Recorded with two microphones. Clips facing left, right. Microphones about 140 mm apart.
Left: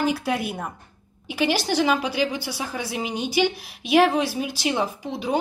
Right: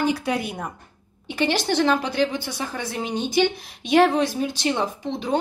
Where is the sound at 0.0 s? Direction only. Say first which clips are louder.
Right 1 dB; centre (ahead or behind).